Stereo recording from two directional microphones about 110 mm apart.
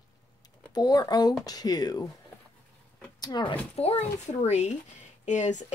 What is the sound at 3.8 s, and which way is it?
Speech, 65° left (ahead or behind).